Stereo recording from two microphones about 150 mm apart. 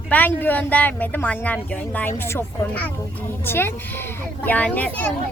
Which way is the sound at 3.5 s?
15° left (ahead or behind).